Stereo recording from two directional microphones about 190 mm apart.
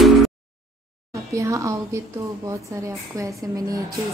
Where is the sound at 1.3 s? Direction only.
15° right (ahead or behind).